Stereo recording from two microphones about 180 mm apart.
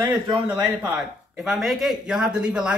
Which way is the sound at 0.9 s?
5° right (ahead or behind).